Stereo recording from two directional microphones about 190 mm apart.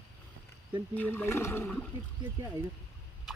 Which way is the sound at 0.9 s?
10° left (ahead or behind).